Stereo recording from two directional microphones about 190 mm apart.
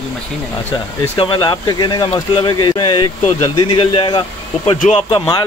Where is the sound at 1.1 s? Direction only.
25° left (ahead or behind).